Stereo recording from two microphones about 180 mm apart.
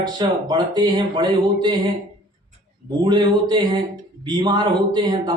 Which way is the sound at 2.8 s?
25° right (ahead or behind).